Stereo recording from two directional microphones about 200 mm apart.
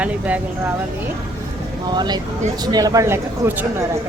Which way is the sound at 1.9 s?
20° right (ahead or behind).